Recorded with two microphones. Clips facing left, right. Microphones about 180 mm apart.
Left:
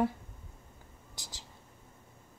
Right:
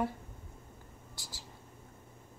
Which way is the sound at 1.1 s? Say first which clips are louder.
Left 1 dB; 20° left (ahead or behind).